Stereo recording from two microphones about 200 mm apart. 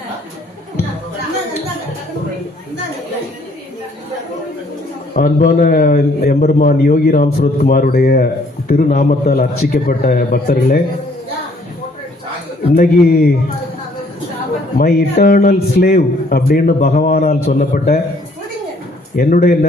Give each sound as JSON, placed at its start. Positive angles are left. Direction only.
{"t": 5.1, "sound": "a man's voice", "side_deg": 40}
{"t": 12.7, "sound": "a man's voice", "side_deg": 50}
{"t": 14.8, "sound": "a man's voice", "side_deg": 50}
{"t": 19.1, "sound": "a man's voice", "side_deg": 45}